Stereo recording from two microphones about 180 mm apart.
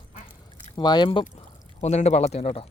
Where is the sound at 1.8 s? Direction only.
40° left (ahead or behind).